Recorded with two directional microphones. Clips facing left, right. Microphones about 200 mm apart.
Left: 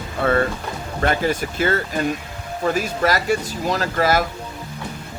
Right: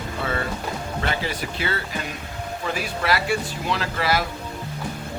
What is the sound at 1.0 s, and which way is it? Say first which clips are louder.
Speech: left 9 dB; 50° left (ahead or behind).